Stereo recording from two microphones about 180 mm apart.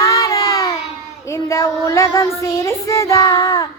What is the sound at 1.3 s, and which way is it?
Female singing, 15° left (ahead or behind).